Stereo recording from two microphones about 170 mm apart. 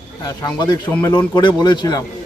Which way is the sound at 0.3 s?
25° left (ahead or behind).